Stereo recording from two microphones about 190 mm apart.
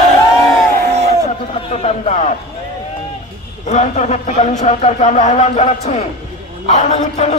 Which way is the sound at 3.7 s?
40° left (ahead or behind).